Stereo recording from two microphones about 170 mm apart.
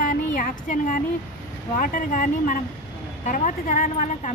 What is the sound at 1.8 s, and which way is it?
A woman's voice, 50° left (ahead or behind).